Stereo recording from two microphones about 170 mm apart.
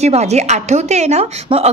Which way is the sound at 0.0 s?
40° right (ahead or behind).